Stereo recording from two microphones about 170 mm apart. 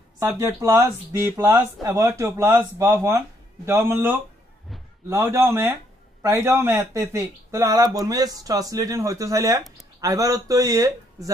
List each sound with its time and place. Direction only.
0.2 s speech: 15° right (ahead or behind)
5.1 s speech: 15° right (ahead or behind)
9.6 s speech: centre (ahead or behind)
9.9 s speech: 20° right (ahead or behind)